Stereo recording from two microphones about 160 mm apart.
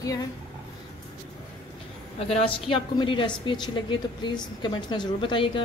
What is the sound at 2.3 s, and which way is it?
A woman's voice, 35° left (ahead or behind).